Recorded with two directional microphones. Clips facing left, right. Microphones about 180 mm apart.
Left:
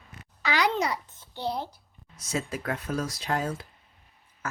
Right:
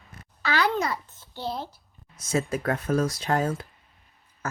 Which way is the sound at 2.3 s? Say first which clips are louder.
Right 5 dB; 50° right (ahead or behind).